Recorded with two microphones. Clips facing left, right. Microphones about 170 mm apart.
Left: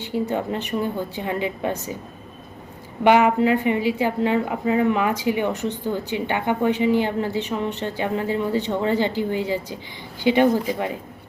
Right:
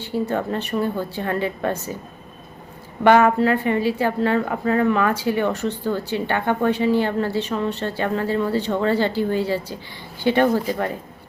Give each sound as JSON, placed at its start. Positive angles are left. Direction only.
{"t": 0.0, "sound": "a woman's voice", "side_deg": 15}
{"t": 3.0, "sound": "a woman's voice", "side_deg": 15}